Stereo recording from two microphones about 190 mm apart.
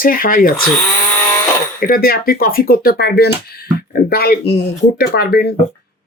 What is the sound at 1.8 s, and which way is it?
Speech, 50° left (ahead or behind).